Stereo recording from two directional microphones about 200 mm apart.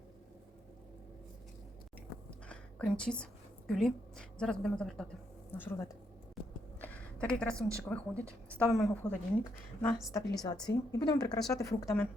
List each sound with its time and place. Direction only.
2.5 s whispering: 5° left (ahead or behind)
3.7 s a woman's voice: 5° left (ahead or behind)
6.8 s a sound: 5° left (ahead or behind)
7.9 s a woman's voice: 5° left (ahead or behind)
9.4 s a woman's voice: 15° left (ahead or behind)